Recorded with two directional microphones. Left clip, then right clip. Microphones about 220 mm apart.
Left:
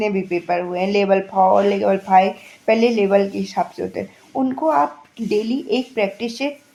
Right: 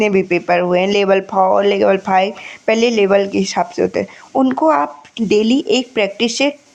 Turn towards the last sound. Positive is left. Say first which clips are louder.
# right 7 dB
turn(degrees=-30)  # may be behind; listen again after turning